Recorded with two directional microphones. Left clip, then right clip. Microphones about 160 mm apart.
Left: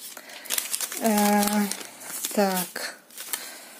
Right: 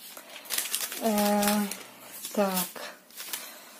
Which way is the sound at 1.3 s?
40° left (ahead or behind).